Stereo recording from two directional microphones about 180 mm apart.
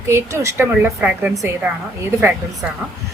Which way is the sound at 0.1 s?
15° right (ahead or behind).